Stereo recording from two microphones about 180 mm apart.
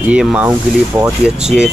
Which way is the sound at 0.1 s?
5° right (ahead or behind).